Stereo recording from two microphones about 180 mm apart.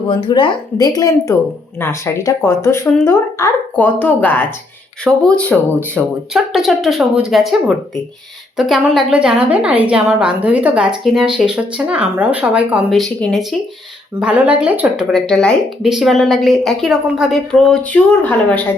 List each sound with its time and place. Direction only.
0.1 s a woman's voice: 25° left (ahead or behind); by 15.0 s 5° right (ahead or behind)
15.1 s a woman's voice: 5° left (ahead or behind)